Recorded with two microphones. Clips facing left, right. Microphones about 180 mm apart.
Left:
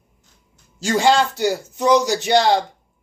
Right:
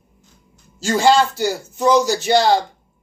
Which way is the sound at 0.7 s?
20° left (ahead or behind).